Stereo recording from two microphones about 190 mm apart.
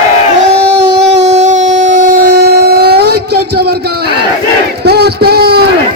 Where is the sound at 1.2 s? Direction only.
35° right (ahead or behind); by 3.8 s 55° right (ahead or behind).